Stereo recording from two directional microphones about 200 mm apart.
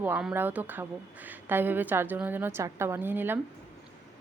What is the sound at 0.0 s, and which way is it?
Speech, 5° right (ahead or behind).